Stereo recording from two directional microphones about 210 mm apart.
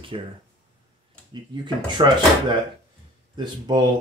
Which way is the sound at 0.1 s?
25° right (ahead or behind).